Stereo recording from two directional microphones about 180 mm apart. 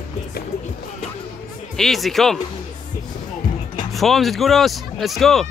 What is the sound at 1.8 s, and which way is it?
Speech, centre (ahead or behind).